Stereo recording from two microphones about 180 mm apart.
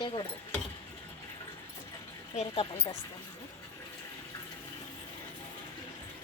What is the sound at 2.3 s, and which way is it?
Speech, 40° left (ahead or behind).